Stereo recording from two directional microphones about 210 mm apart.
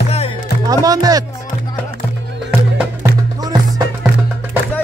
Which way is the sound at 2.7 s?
15° right (ahead or behind).